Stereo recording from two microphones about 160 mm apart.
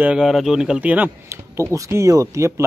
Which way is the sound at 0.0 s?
5° right (ahead or behind).